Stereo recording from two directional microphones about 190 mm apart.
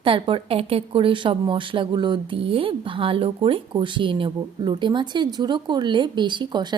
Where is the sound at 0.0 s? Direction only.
30° right (ahead or behind).